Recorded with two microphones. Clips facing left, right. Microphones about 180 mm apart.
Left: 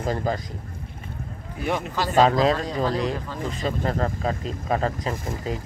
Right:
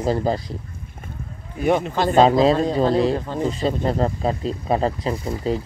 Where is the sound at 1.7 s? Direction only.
25° right (ahead or behind).